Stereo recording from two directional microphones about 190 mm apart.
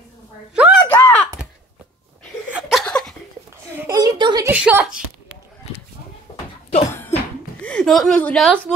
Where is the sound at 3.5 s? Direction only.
20° right (ahead or behind).